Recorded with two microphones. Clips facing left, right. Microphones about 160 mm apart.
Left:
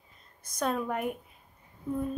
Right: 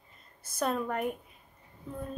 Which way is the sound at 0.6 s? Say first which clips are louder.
Even; centre (ahead or behind).